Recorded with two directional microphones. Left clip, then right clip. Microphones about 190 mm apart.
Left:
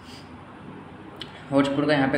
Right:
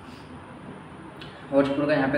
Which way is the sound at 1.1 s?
50° left (ahead or behind).